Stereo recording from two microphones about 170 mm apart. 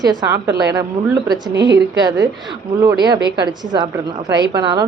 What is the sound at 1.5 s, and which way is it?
Speech, 90° right.